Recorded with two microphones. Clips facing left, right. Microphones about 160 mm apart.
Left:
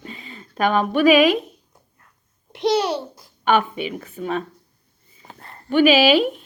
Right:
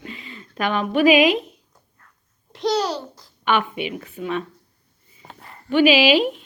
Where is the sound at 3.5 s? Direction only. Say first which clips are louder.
Left 2 dB; 45° left (ahead or behind).